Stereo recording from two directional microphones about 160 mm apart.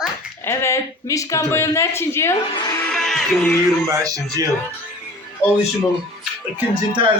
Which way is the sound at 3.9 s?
20° right (ahead or behind).